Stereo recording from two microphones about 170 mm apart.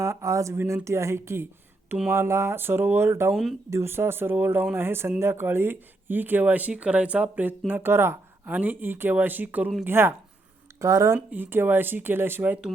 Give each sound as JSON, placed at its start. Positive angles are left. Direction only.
{"t": 0.0, "sound": "speech", "side_deg": -20}